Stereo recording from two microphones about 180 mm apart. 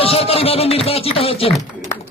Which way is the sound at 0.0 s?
35° left (ahead or behind).